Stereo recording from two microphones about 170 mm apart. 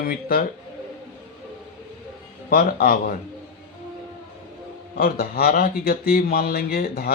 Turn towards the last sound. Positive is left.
turn(degrees=65)  # may be behind; listen again after turning